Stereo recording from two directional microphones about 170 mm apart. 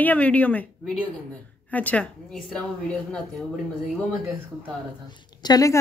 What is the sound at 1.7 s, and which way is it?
Speech, 10° left (ahead or behind).